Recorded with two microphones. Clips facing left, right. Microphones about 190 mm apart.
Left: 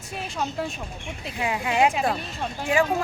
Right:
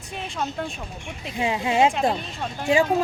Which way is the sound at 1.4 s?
25° right (ahead or behind).